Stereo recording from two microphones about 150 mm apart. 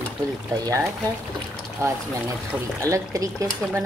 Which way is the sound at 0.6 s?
20° right (ahead or behind).